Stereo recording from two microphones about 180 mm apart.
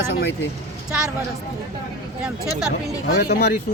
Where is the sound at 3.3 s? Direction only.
60° left (ahead or behind).